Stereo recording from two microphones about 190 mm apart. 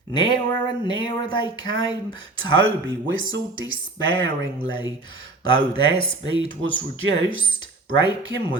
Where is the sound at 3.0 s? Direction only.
90° right.